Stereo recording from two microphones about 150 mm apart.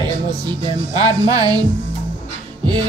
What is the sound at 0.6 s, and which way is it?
Speech, 25° right (ahead or behind).